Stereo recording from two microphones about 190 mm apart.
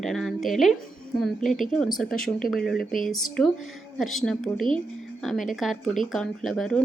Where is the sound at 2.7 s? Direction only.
45° left (ahead or behind).